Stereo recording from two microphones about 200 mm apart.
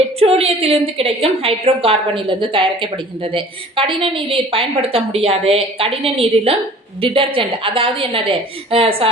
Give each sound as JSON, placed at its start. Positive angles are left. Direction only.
{"t": 0.2, "sound": "a woman's voice", "side_deg": -30}